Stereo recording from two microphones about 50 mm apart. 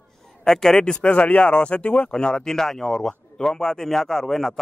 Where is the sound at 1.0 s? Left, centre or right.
Left.